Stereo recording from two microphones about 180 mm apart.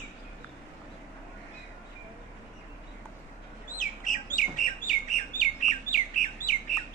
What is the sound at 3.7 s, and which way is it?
Bird, 45° left (ahead or behind).